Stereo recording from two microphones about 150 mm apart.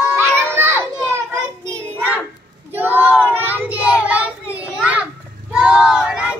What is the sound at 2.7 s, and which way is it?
Child singing, 15° right (ahead or behind).